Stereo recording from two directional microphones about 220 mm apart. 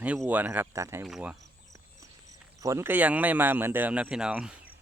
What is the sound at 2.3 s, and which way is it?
Speech, 15° right (ahead or behind).